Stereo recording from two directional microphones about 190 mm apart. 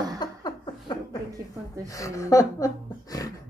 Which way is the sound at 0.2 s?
20° left (ahead or behind).